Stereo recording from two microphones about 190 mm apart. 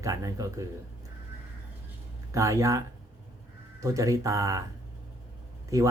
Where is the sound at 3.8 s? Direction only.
15° right (ahead or behind).